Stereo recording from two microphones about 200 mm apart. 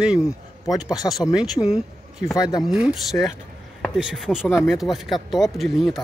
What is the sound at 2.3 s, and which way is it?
Speech, 20° left (ahead or behind).